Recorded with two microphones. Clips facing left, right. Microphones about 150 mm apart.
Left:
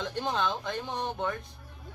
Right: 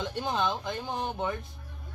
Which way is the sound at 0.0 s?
5° right (ahead or behind).